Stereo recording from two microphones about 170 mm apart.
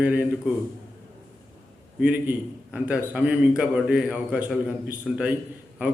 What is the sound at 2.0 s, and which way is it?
A man's voice, 10° right (ahead or behind).